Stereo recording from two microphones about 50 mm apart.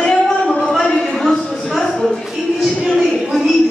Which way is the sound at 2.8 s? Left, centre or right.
Centre.